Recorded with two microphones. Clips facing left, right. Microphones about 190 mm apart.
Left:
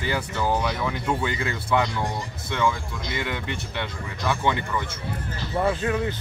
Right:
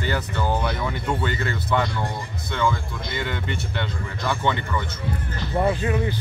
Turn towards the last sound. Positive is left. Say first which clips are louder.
# right 1 dB
turn(degrees=-10)  # may be behind; listen again after turning